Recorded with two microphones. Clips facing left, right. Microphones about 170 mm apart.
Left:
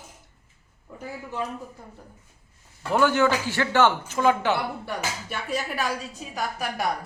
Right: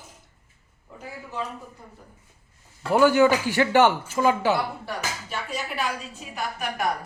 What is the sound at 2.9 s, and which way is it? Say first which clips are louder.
A man's voice: right 3 dB; 10° right (ahead or behind).